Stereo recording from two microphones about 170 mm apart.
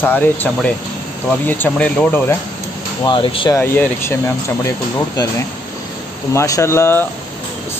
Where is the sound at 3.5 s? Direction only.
15° left (ahead or behind).